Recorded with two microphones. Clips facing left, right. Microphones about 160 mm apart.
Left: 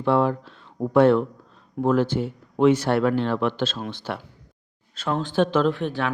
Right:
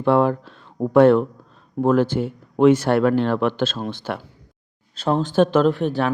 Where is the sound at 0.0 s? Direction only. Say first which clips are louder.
Right 3 dB; 50° right (ahead or behind).